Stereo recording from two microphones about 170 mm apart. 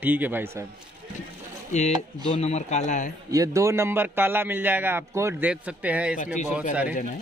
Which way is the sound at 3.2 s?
20° right (ahead or behind).